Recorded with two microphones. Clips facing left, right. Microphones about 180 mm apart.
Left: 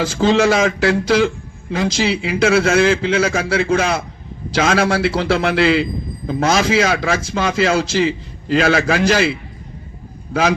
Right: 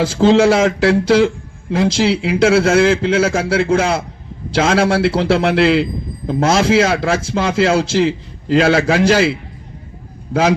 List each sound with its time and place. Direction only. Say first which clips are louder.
0.0 s a man's voice: right 3 dB; 30° right (ahead or behind)